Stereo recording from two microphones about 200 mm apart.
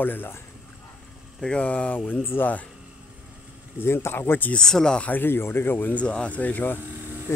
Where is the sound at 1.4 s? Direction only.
5° left (ahead or behind).